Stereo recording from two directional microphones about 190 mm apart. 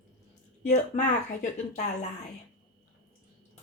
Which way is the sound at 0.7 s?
40° left (ahead or behind).